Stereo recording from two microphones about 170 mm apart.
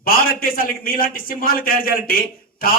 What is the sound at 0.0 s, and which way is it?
A man's voice, 55° left (ahead or behind).